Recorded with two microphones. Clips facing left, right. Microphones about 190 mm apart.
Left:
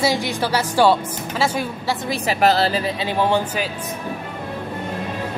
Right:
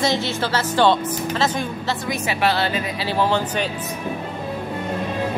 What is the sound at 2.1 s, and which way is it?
Speech, 40° left (ahead or behind).